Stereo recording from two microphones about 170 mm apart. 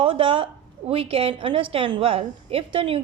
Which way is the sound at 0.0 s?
30° right (ahead or behind).